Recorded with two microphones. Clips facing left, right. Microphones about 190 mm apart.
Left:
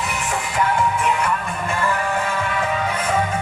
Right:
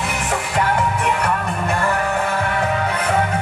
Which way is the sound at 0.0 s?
65° right (ahead or behind).